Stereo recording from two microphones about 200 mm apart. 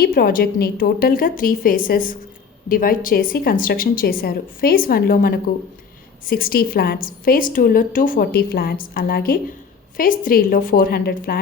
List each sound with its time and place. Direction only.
0.0 s a woman's voice: 50° left (ahead or behind)